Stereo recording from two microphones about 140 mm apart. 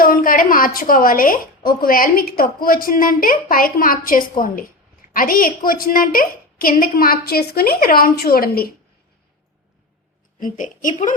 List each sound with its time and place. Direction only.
0.0 s a woman's voice: 90° left
10.4 s a woman's voice: 65° left (ahead or behind)